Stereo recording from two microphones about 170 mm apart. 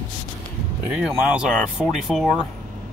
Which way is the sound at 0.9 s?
5° right (ahead or behind).